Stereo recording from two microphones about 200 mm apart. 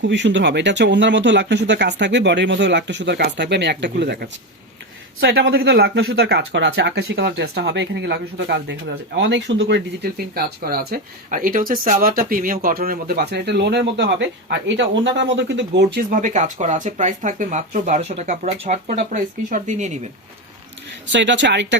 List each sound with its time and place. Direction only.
0.0 s speech: 60° right (ahead or behind); by 20.0 s 35° right (ahead or behind)
21.1 s speech: 65° right (ahead or behind)